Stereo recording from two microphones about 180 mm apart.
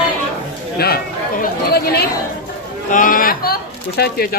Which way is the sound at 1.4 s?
60° left (ahead or behind).